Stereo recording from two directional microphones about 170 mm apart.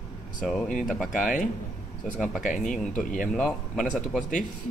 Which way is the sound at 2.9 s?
50° left (ahead or behind).